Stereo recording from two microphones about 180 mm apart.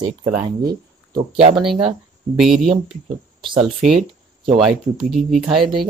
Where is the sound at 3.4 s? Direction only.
25° right (ahead or behind).